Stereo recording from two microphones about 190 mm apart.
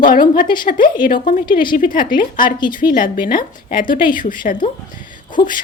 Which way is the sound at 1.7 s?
45° left (ahead or behind).